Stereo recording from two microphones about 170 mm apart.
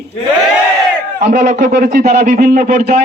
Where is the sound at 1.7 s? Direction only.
65° right (ahead or behind).